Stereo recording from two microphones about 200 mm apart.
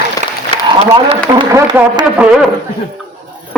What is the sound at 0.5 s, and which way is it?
Applause, 30° right (ahead or behind).